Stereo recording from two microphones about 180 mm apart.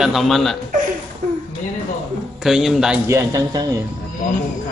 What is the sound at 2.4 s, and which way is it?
Speech, centre (ahead or behind).